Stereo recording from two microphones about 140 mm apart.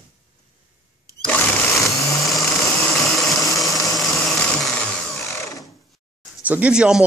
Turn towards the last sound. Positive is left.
turn(degrees=-5)  # may be behind; listen again after turning